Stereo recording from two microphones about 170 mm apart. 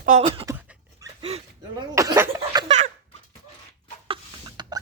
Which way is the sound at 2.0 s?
15° right (ahead or behind).